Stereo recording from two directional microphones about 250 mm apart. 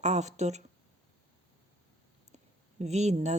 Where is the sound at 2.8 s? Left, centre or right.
Right.